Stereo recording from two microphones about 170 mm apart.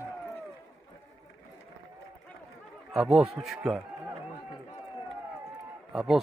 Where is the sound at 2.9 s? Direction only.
5° right (ahead or behind).